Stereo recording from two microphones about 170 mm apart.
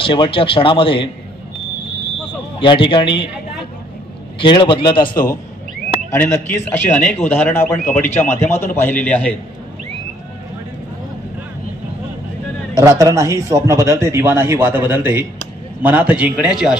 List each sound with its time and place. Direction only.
0.0 s speech: 30° left (ahead or behind)
2.6 s a man's voice: 30° left (ahead or behind)
4.4 s a man's voice: 30° left (ahead or behind)
6.0 s a man's voice: 15° left (ahead or behind)
12.7 s a man's voice: 20° right (ahead or behind)